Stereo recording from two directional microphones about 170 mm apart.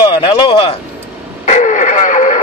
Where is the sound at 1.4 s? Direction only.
45° left (ahead or behind).